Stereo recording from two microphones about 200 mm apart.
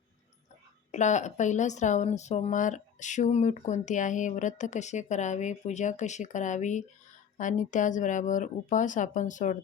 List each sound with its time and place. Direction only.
0.9 s a woman's voice: 35° left (ahead or behind)